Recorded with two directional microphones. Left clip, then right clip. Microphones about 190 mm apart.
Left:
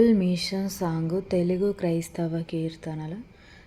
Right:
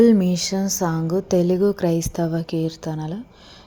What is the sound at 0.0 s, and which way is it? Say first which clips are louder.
Speech: right 6 dB; 25° right (ahead or behind).